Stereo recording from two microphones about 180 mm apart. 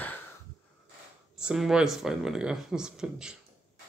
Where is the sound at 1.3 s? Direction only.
5° right (ahead or behind).